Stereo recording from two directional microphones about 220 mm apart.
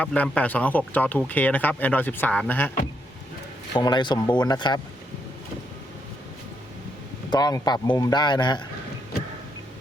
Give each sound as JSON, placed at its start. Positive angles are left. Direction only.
{"t": 0.0, "sound": "speech", "side_deg": 5}
{"t": 3.8, "sound": "a man's voice", "side_deg": 20}
{"t": 7.3, "sound": "a man's voice", "side_deg": 20}